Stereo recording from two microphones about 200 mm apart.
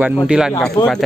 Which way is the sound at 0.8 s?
20° left (ahead or behind).